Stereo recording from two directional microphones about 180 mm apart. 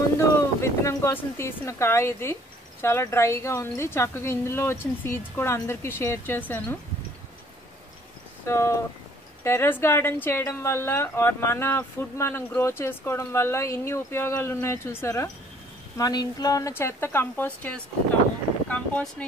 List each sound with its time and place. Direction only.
0.4 s a woman's voice: 15° left (ahead or behind)
8.5 s a woman's voice: 15° left (ahead or behind)